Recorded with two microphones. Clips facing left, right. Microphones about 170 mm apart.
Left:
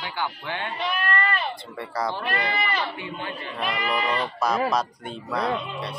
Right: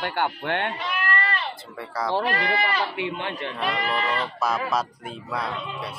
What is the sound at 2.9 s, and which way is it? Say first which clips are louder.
Speech: right 4 dB; 75° right (ahead or behind).